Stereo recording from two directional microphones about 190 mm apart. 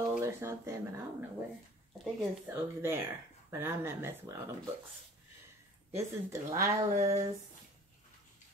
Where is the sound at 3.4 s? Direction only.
10° right (ahead or behind).